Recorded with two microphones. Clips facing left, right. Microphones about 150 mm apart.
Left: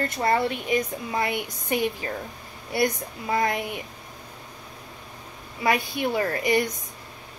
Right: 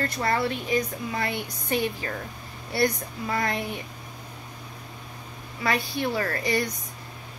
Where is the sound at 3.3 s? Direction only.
20° left (ahead or behind).